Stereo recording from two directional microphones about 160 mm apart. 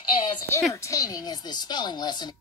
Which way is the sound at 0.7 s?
20° left (ahead or behind).